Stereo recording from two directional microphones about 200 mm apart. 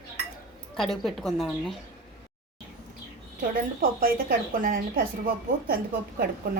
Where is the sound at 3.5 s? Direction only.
45° right (ahead or behind).